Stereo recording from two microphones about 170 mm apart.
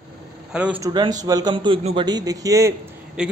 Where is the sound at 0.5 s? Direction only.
5° right (ahead or behind).